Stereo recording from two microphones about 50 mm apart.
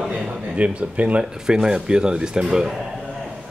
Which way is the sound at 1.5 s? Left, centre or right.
Centre.